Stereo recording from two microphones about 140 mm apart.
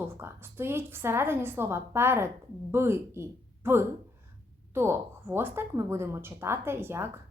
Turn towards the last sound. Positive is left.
turn(degrees=-15)  # may be behind; listen again after turning